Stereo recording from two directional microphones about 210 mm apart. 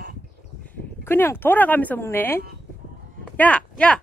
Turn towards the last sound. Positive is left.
turn(degrees=5)  # may be behind; listen again after turning